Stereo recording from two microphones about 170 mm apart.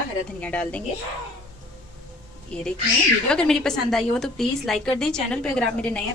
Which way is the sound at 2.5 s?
5° left (ahead or behind).